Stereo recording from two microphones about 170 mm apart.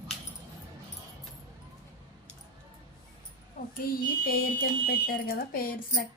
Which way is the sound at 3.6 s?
60° left (ahead or behind).